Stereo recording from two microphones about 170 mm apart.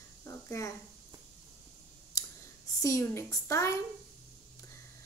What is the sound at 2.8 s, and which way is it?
A woman's voice, 15° left (ahead or behind).